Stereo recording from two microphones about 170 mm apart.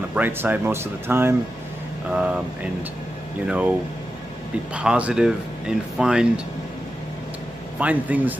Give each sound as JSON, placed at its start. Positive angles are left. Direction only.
{"t": 0.1, "sound": "speech", "side_deg": -10}
{"t": 3.4, "sound": "speech", "side_deg": -5}
{"t": 4.7, "sound": "speech", "side_deg": -5}
{"t": 7.8, "sound": "speech", "side_deg": -10}